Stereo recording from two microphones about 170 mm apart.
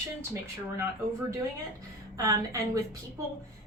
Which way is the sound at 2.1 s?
20° right (ahead or behind).